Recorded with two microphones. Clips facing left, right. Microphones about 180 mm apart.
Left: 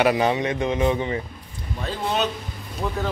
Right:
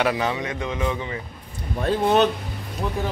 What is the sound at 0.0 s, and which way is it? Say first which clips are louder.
Speech: left 4 dB; 15° left (ahead or behind).